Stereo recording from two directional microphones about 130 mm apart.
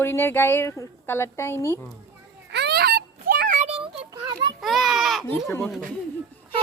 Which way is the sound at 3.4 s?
80° right.